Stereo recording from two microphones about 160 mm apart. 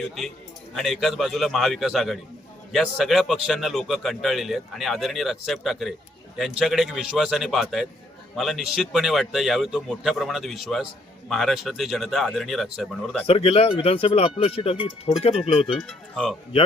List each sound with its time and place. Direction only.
0.7 s a man's voice: centre (ahead or behind)
13.2 s speech: 40° left (ahead or behind)
15.8 s a man's voice: centre (ahead or behind)